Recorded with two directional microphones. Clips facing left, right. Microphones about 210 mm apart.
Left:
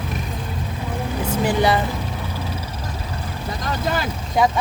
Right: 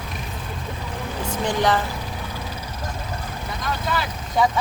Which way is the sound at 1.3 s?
10° left (ahead or behind).